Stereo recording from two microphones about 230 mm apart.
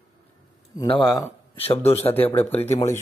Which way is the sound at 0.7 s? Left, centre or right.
Left.